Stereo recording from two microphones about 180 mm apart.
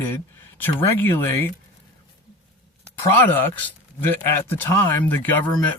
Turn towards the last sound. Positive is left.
turn(degrees=10)  # may be behind; listen again after turning